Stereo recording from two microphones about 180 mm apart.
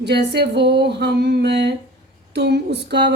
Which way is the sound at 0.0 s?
70° right (ahead or behind).